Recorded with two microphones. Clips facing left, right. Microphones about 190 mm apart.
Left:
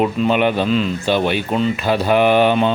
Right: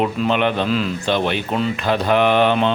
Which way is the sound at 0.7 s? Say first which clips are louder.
Left 2 dB; centre (ahead or behind).